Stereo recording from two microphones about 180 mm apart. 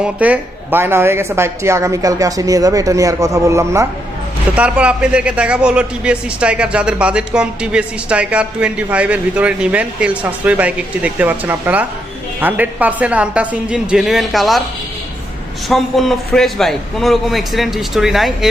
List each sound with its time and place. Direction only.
0.0 s speech: 10° right (ahead or behind)
15.7 s a man's voice: centre (ahead or behind)